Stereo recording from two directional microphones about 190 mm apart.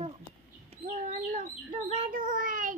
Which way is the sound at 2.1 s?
45° right (ahead or behind).